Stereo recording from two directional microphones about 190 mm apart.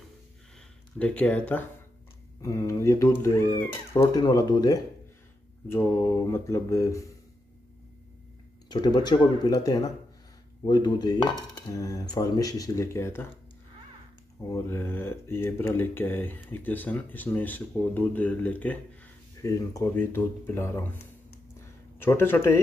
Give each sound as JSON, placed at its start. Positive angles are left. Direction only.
{"t": 0.9, "sound": "speech", "side_deg": 10}
{"t": 4.0, "sound": "dishes", "side_deg": 20}
{"t": 5.7, "sound": "speech", "side_deg": 10}
{"t": 8.6, "sound": "dishes", "side_deg": 20}
{"t": 14.5, "sound": "speech", "side_deg": 10}